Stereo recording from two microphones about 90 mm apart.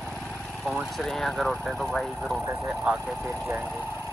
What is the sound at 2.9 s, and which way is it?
Speech, 15° right (ahead or behind).